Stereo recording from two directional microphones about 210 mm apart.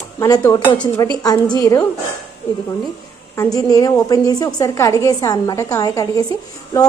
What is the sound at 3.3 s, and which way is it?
A woman's voice, 15° left (ahead or behind).